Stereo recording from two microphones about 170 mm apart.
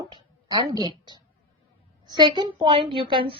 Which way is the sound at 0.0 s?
20° right (ahead or behind).